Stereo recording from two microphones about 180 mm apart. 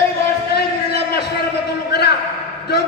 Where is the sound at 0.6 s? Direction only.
65° left (ahead or behind).